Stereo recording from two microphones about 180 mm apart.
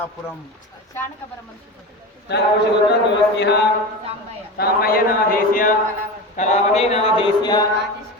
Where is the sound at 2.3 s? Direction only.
65° left (ahead or behind).